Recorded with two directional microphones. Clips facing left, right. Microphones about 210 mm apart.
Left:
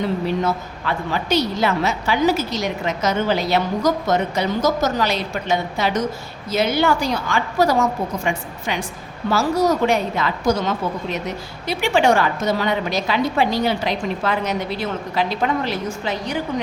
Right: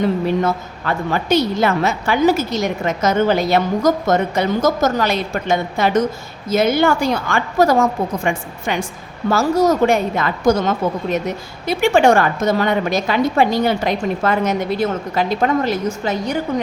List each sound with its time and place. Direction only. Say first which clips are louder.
0.4 s a woman's voice: right 2 dB; 50° right (ahead or behind)